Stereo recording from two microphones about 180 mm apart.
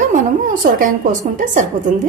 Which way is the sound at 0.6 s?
55° right (ahead or behind).